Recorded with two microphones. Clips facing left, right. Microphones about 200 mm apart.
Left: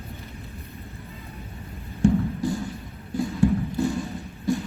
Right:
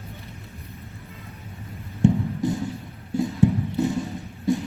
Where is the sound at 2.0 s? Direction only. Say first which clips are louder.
Even; 20° right (ahead or behind).